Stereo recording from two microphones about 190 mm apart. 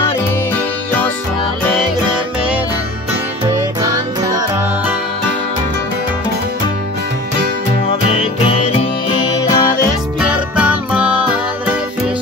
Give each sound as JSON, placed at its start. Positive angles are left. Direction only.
{"t": 3.4, "sound": "music", "side_deg": -15}
{"t": 9.3, "sound": "music", "side_deg": 20}
{"t": 10.2, "sound": "music", "side_deg": -5}